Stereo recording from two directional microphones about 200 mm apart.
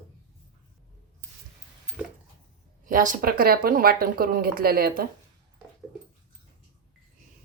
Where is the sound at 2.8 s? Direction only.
40° right (ahead or behind).